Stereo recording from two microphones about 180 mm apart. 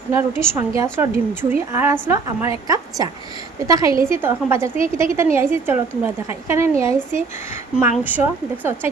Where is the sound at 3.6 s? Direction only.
20° right (ahead or behind).